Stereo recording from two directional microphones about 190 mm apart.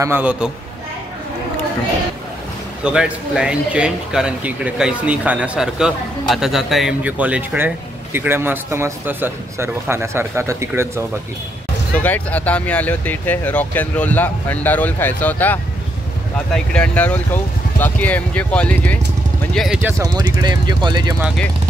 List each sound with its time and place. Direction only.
0.0 s speech: 10° right (ahead or behind)
2.8 s speech: 5° right (ahead or behind)
12.0 s speech: 10° left (ahead or behind)
20.0 s speech: 20° right (ahead or behind)